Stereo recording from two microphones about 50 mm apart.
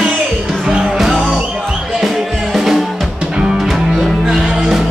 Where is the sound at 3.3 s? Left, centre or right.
Centre.